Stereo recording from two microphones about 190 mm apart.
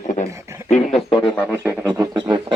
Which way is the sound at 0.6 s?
35° left (ahead or behind).